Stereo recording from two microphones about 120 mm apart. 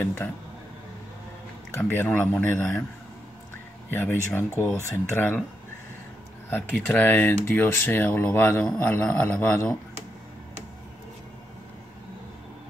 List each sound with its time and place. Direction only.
0.0 s speech: 15° left (ahead or behind)
1.7 s speech: 20° left (ahead or behind)
3.9 s speech: 20° left (ahead or behind)
6.5 s speech: 15° left (ahead or behind)